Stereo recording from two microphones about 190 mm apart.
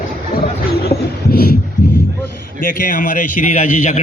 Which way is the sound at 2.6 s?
45° left (ahead or behind).